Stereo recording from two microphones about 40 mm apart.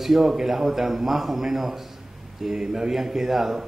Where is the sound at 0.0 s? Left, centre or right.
Centre.